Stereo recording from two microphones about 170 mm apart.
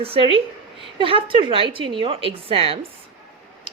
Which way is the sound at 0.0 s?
35° right (ahead or behind).